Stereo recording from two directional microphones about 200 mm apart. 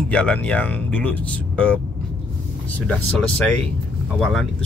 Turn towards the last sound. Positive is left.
turn(degrees=0)  # may be behind; listen again after turning